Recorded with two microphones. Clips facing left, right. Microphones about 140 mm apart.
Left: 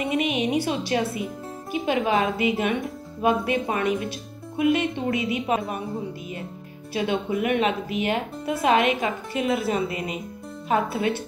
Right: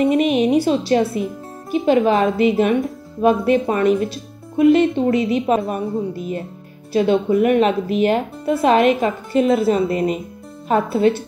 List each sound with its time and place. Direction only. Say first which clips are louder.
0.0 s a woman's voice: right 9 dB; 45° right (ahead or behind)
3.3 s a woman's voice: right 7 dB; 40° right (ahead or behind)